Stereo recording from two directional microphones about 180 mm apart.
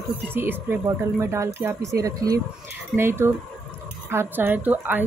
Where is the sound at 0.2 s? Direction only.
10° right (ahead or behind).